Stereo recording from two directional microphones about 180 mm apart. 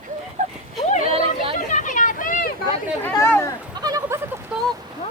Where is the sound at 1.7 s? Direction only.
45° left (ahead or behind).